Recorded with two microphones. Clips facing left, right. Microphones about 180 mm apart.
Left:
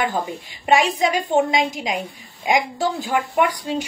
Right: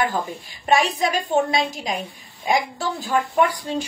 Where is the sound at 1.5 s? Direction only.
15° left (ahead or behind).